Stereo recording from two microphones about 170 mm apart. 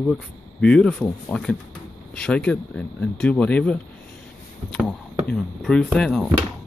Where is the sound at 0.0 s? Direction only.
5° left (ahead or behind).